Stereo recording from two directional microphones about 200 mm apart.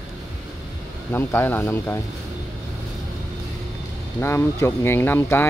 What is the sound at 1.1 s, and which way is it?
Speech, 10° left (ahead or behind).